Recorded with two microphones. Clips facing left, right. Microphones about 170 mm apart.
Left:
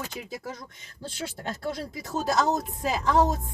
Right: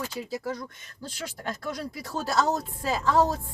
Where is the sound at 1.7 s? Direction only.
20° left (ahead or behind).